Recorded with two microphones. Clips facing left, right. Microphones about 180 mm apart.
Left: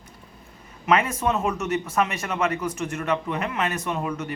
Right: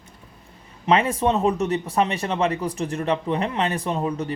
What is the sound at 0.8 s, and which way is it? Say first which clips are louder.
Speech: right 2 dB; 30° right (ahead or behind).